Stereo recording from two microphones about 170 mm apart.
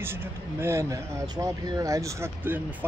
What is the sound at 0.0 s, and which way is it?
Speech, 15° right (ahead or behind).